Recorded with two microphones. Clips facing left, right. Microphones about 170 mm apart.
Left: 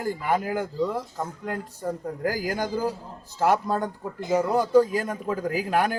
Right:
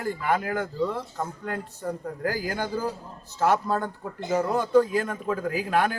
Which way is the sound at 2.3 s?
10° left (ahead or behind).